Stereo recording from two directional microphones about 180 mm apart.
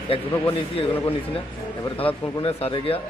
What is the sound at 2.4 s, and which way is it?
Speech, 35° left (ahead or behind).